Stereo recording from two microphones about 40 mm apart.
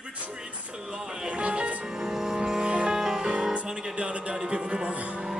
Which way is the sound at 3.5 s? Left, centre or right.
Right.